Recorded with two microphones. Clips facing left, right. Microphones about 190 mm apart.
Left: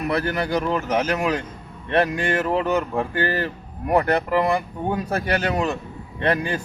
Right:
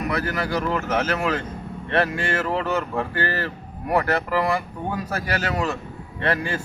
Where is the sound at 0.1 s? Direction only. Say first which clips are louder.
Left 5 dB; 25° left (ahead or behind).